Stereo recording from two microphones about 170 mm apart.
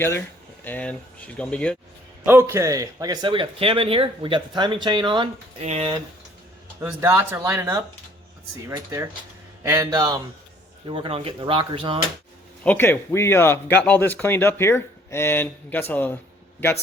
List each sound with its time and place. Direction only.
0.6 s speech: 10° left (ahead or behind)
2.2 s speech: 15° right (ahead or behind); by 5.3 s 30° right (ahead or behind)
5.6 s speech: 40° right (ahead or behind)
6.7 s speech: 15° right (ahead or behind); by 11.9 s 30° right (ahead or behind)
12.6 s speech: 10° left (ahead or behind)